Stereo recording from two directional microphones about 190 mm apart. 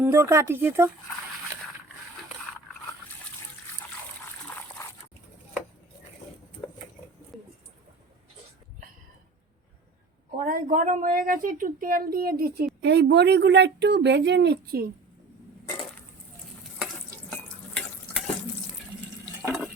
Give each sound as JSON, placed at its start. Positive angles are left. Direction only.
{"t": 0.0, "sound": "speech", "side_deg": -15}
{"t": 4.3, "sound": "trickle", "side_deg": 10}
{"t": 7.3, "sound": "a sound", "side_deg": 0}
{"t": 10.3, "sound": "a woman's voice", "side_deg": -45}
{"t": 12.8, "sound": "speech", "side_deg": -65}
{"t": 16.7, "sound": "stir", "side_deg": 0}